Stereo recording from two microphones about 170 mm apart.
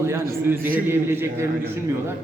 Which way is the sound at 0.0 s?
15° right (ahead or behind).